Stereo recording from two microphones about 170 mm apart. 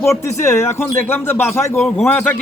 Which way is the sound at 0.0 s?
15° left (ahead or behind).